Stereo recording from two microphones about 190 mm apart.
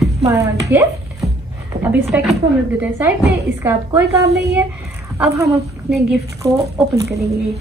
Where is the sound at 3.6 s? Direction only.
15° right (ahead or behind).